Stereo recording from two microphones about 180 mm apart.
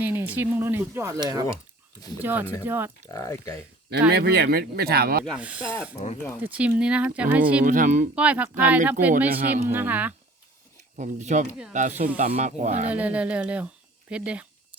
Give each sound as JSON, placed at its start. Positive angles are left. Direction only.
{"t": 0.0, "sound": "speech", "side_deg": -10}
{"t": 2.2, "sound": "speech", "side_deg": -10}
{"t": 3.1, "sound": "speech", "side_deg": 20}
{"t": 4.1, "sound": "speech", "side_deg": -60}
{"t": 5.2, "sound": "speech", "side_deg": -5}
{"t": 7.6, "sound": "speech", "side_deg": -45}
{"t": 8.1, "sound": "speech", "side_deg": -5}
{"t": 10.9, "sound": "speech", "side_deg": -40}
{"t": 12.9, "sound": "speech", "side_deg": -5}